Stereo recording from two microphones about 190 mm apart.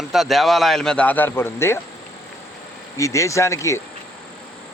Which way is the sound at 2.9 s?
15° left (ahead or behind).